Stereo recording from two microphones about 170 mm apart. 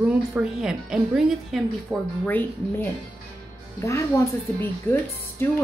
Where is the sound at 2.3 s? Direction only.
10° left (ahead or behind).